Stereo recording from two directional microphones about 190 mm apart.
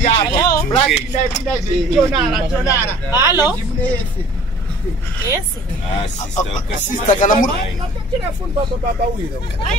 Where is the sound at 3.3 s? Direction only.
20° left (ahead or behind).